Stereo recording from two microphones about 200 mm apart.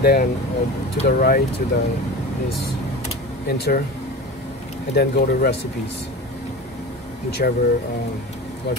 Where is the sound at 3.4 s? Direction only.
50° left (ahead or behind).